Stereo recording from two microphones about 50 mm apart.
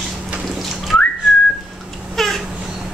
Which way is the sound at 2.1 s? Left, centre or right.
Centre.